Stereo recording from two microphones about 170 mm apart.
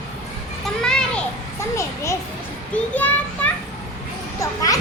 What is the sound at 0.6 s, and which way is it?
Children playing, 5° left (ahead or behind).